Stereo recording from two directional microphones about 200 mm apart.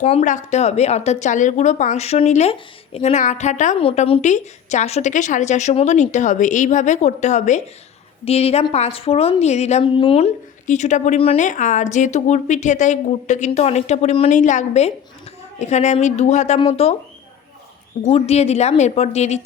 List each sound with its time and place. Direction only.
0.0 s a woman's voice: 30° left (ahead or behind)
18.0 s a woman's voice: 30° left (ahead or behind)